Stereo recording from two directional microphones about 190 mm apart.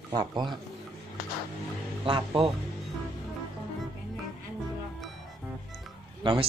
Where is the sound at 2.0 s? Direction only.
25° right (ahead or behind).